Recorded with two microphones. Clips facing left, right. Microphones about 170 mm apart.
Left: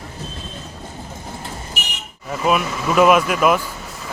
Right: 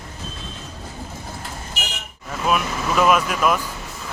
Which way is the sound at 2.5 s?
5° left (ahead or behind).